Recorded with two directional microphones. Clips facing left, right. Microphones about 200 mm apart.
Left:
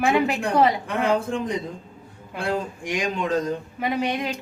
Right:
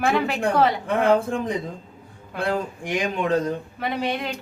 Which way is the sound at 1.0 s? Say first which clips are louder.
Right 3 dB; 55° right (ahead or behind).